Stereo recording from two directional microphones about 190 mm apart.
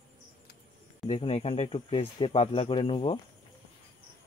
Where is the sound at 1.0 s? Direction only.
30° left (ahead or behind).